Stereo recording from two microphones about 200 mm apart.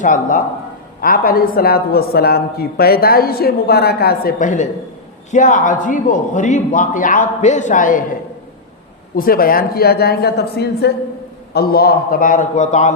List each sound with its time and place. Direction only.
0.0 s a man's voice: 40° left (ahead or behind)
9.1 s a man's voice: 45° left (ahead or behind)